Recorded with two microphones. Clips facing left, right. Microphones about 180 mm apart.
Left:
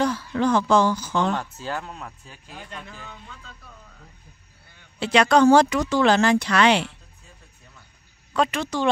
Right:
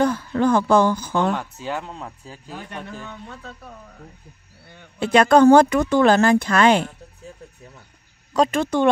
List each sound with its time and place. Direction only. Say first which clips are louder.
0.0 s speech: right 3 dB; 55° right (ahead or behind)
1.3 s speech: right 2 dB; 15° right (ahead or behind)
2.7 s a man's voice: right 5 dB; 60° right (ahead or behind)
4.9 s speech: right 3 dB; 50° right (ahead or behind)
8.3 s speech: right 5 dB; 45° right (ahead or behind)